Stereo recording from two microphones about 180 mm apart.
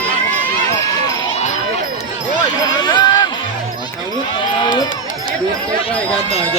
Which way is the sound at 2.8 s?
25° left (ahead or behind).